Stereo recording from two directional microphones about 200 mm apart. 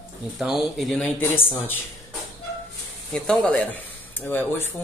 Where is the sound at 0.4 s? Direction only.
Centre (ahead or behind).